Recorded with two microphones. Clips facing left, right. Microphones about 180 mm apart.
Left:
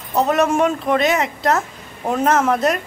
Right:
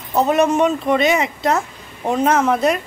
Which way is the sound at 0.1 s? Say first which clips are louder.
Right 1 dB; centre (ahead or behind).